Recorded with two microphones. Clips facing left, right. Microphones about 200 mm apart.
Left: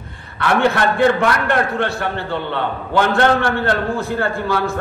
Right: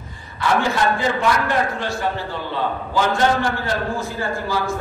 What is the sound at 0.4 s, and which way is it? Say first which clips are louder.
A man's voice: left 3 dB; 60° left (ahead or behind).